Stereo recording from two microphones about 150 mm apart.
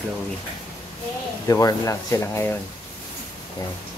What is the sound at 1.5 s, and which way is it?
Speech, 20° left (ahead or behind).